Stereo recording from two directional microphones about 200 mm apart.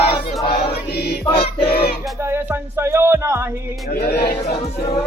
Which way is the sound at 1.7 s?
50° left (ahead or behind).